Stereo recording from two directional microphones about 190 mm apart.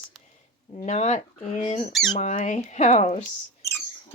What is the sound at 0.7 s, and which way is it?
Speech, 35° left (ahead or behind).